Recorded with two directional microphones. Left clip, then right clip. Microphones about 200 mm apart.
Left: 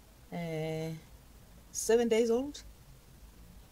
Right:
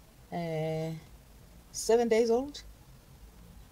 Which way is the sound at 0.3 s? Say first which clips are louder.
Right 4 dB; 5° right (ahead or behind).